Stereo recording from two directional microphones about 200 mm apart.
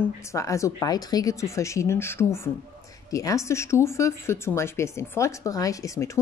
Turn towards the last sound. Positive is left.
turn(degrees=15)  # may be behind; listen again after turning